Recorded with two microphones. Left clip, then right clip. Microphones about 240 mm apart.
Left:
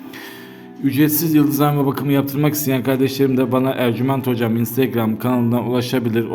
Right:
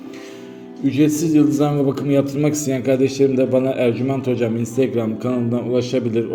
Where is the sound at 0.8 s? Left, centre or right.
Left.